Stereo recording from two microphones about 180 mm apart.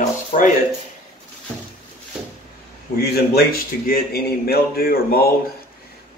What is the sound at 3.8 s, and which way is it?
Speech, 55° left (ahead or behind).